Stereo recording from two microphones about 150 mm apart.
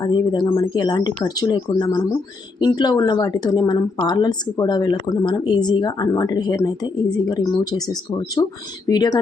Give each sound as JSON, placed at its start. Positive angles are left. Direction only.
{"t": 0.0, "sound": "a woman's voice", "side_deg": 30}